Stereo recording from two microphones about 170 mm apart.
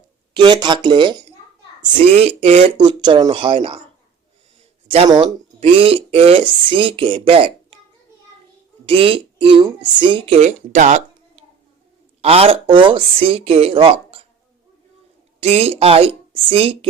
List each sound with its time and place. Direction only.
0.3 s speech: 25° right (ahead or behind)
2.0 s speech: 40° right (ahead or behind)
4.9 s speech: 30° right (ahead or behind)
8.9 s speech: 30° right (ahead or behind)
15.4 s speech: 35° right (ahead or behind)